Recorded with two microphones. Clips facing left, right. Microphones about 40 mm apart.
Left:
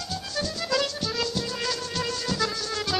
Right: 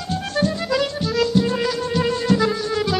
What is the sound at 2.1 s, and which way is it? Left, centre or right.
Music, right.